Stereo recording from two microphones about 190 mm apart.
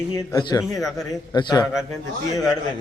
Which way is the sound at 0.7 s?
Centre (ahead or behind).